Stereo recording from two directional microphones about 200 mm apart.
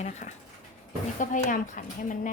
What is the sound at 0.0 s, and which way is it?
Speech, 35° left (ahead or behind).